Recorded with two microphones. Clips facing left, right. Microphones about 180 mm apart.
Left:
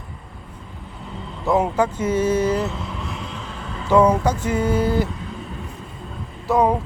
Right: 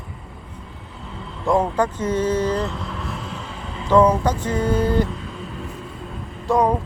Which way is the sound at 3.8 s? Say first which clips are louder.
Even; 10° left (ahead or behind).